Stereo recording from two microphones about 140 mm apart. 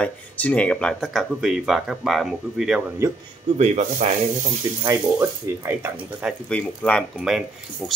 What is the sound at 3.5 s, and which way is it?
Speech, 50° right (ahead or behind).